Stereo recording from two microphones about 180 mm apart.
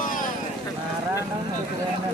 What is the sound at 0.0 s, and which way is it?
Vehicle, 50° left (ahead or behind).